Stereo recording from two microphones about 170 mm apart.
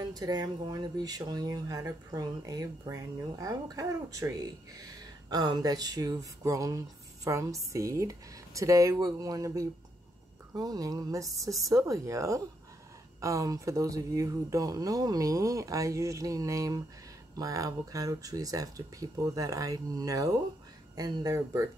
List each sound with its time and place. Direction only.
0.0 s speech: 25° right (ahead or behind)